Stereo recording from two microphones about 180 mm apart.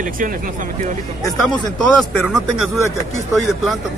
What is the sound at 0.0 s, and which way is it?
Speech, 50° right (ahead or behind).